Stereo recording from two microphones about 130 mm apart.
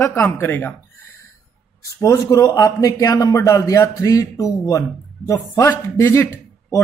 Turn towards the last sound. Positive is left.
turn(degrees=20)  # may be behind; listen again after turning